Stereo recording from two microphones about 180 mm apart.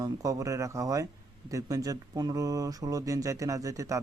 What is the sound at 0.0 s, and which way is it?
Speech, 20° right (ahead or behind).